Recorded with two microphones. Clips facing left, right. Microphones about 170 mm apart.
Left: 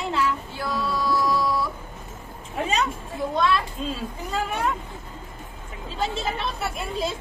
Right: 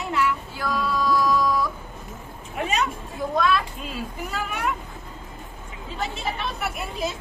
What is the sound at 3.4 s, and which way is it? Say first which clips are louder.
Speech: right 1 dB; 25° left (ahead or behind).